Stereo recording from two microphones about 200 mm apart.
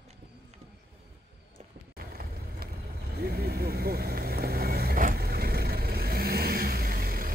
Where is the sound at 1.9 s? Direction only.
50° right (ahead or behind).